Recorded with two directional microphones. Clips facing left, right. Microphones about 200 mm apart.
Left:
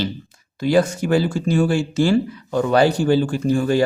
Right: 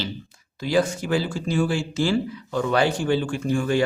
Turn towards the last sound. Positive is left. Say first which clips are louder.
# left 4 dB
turn(degrees=35)  # may be behind; listen again after turning